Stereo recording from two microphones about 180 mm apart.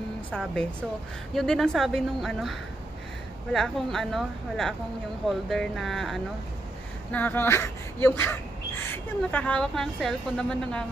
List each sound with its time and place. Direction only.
0.3 s speech: 5° left (ahead or behind)
3.5 s speech: centre (ahead or behind)